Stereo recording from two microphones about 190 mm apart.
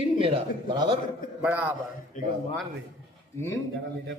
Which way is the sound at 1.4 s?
10° right (ahead or behind).